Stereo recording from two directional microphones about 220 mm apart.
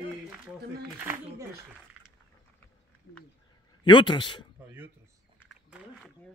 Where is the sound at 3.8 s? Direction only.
20° left (ahead or behind).